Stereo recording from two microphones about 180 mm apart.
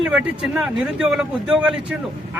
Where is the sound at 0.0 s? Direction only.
5° right (ahead or behind).